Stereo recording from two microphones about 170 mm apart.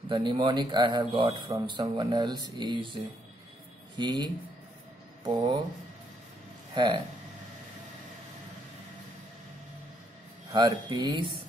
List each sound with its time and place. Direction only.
0.1 s speech: 30° right (ahead or behind)
6.7 s speech: 25° right (ahead or behind)
10.5 s speech: 25° right (ahead or behind)